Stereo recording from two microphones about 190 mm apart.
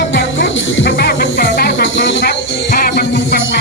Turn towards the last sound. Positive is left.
turn(degrees=65)  # may be behind; listen again after turning